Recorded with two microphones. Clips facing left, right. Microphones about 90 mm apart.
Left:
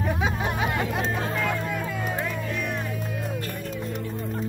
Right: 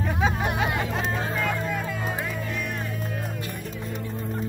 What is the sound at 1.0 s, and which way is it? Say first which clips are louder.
Music: even; 15° right (ahead or behind).